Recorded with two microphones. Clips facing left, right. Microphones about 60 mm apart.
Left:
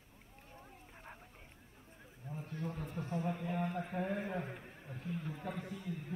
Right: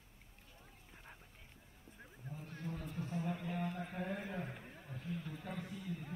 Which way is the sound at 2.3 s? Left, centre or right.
Left.